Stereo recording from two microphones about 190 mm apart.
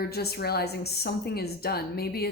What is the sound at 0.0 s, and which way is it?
A woman's voice, 55° left (ahead or behind).